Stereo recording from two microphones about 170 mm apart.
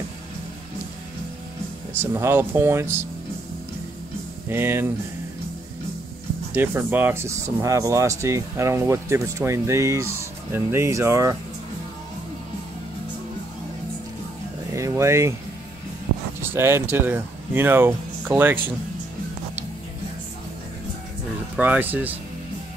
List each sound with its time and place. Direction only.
2.0 s speech: 15° right (ahead or behind)
4.5 s speech: 15° right (ahead or behind)
6.5 s speech: 10° right (ahead or behind)
14.7 s a sound: 15° right (ahead or behind)
16.3 s a sound: 15° right (ahead or behind)
16.9 s speech: 10° right (ahead or behind)
21.5 s speech: 10° right (ahead or behind)